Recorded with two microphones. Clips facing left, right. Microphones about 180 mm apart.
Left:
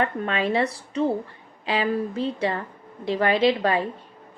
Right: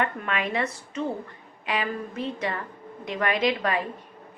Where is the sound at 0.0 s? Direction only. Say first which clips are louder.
Left 4 dB; 30° left (ahead or behind).